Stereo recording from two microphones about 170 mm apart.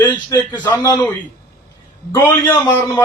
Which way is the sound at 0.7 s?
15° left (ahead or behind).